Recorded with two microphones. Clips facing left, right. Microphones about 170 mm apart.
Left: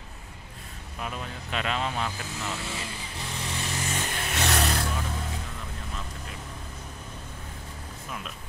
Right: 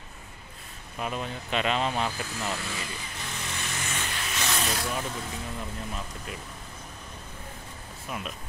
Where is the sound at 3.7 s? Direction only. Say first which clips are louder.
Left 3 dB; 35° left (ahead or behind); by 4.7 s 60° left (ahead or behind).